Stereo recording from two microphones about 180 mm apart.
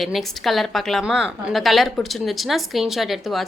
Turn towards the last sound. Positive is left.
turn(degrees=0)  # may be behind; listen again after turning